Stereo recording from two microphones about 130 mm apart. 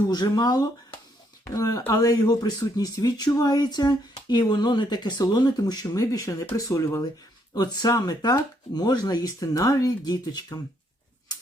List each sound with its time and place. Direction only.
0.1 s speech: 30° left (ahead or behind)